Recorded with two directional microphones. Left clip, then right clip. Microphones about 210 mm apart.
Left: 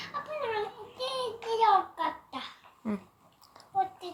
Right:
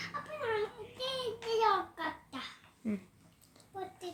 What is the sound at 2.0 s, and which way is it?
Child singing, 20° right (ahead or behind).